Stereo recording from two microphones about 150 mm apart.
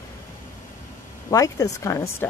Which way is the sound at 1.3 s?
20° left (ahead or behind).